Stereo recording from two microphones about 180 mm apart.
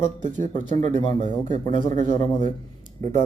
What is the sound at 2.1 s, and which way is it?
Speech, 25° left (ahead or behind).